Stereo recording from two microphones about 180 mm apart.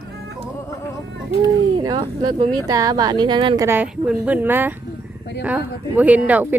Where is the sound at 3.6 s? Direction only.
10° right (ahead or behind).